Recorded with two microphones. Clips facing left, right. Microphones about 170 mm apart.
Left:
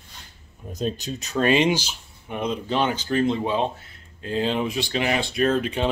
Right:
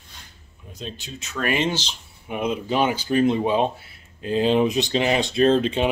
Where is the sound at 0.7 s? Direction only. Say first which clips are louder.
Left 8 dB; 40° left (ahead or behind).